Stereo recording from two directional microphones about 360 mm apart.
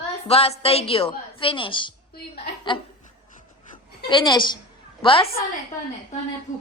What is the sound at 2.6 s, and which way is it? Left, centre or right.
Laughter, centre.